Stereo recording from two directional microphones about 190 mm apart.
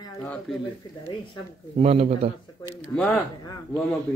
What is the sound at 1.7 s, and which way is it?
Speech, 30° right (ahead or behind).